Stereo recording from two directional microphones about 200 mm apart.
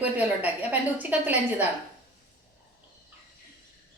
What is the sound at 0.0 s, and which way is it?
A woman's voice, 10° right (ahead or behind).